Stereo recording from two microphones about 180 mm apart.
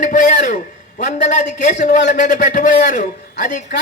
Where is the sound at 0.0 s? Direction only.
45° left (ahead or behind).